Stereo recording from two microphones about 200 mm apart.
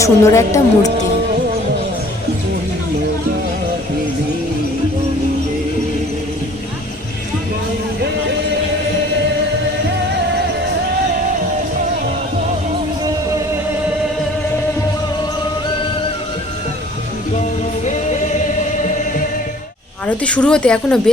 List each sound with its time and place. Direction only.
0.0 s a woman's voice: 15° left (ahead or behind)
17.3 s music: 35° left (ahead or behind)
20.1 s speech: 5° left (ahead or behind)